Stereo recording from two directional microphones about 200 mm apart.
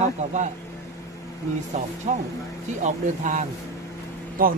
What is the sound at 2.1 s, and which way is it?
Speech, 35° right (ahead or behind).